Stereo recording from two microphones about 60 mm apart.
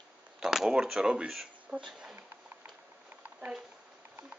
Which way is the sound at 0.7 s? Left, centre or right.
Centre.